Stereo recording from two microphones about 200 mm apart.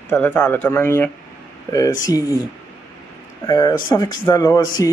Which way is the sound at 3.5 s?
20° left (ahead or behind).